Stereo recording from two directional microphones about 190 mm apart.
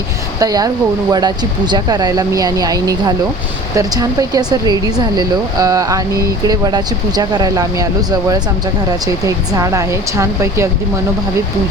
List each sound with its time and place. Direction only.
0.3 s a woman's voice: 20° right (ahead or behind)